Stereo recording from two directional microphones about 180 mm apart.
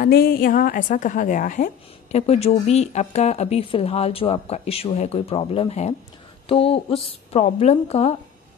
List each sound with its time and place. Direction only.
0.0 s a woman's voice: 55° left (ahead or behind); by 8.2 s 35° left (ahead or behind)